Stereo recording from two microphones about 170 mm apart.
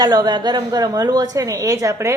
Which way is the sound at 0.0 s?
25° right (ahead or behind).